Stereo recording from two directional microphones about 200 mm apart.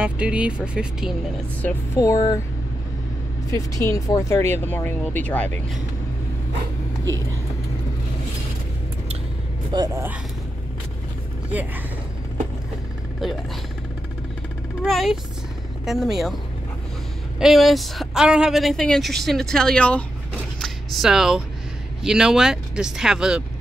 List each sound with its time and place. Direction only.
0.0 s speech: 5° right (ahead or behind)
1.6 s speech: 10° left (ahead or behind)
3.4 s speech: 15° left (ahead or behind)
9.7 s speech: 20° right (ahead or behind)
14.8 s speech: centre (ahead or behind)
17.4 s speech: centre (ahead or behind)
20.5 s a sound: centre (ahead or behind)
22.0 s speech: 5° right (ahead or behind)